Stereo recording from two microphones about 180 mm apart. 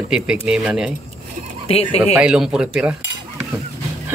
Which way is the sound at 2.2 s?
5° right (ahead or behind).